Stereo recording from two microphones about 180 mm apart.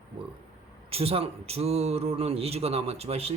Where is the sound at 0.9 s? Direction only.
35° right (ahead or behind).